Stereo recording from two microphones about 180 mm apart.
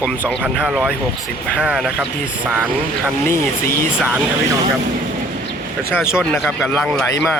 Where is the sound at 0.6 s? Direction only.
5° right (ahead or behind).